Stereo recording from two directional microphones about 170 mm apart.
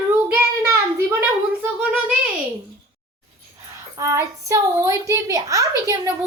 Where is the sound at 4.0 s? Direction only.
15° right (ahead or behind).